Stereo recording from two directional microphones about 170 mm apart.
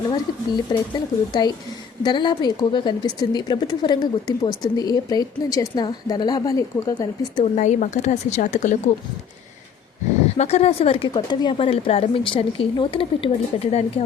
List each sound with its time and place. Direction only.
0.1 s speech: 25° left (ahead or behind)
7.4 s speech: 45° left (ahead or behind)
10.3 s speech: 40° left (ahead or behind)